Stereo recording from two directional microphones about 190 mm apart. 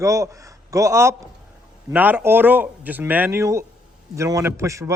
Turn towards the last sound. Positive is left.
turn(degrees=-15)  # may be behind; listen again after turning